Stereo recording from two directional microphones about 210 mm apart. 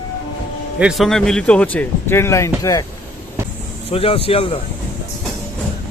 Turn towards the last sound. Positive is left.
turn(degrees=25)  # may be behind; listen again after turning